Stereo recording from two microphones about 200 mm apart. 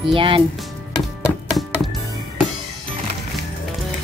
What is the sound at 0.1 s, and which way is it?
Speech, 25° right (ahead or behind).